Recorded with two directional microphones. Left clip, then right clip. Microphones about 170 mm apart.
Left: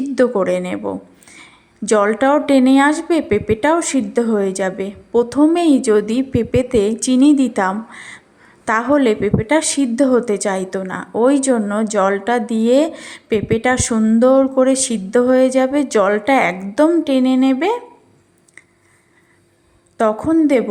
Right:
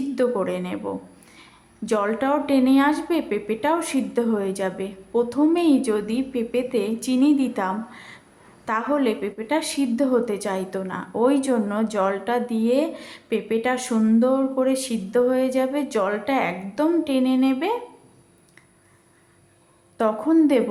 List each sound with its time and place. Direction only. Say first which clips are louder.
0.2 s speech: left 8 dB; 35° left (ahead or behind)
14.2 s speech: left 11 dB; 35° left (ahead or behind)
20.0 s a woman's voice: left 6 dB; 25° left (ahead or behind)